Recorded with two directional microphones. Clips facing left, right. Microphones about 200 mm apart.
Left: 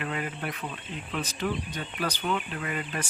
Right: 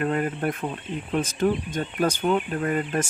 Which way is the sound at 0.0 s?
45° right (ahead or behind).